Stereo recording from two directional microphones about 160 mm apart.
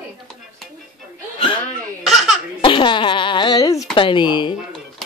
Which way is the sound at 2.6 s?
35° left (ahead or behind).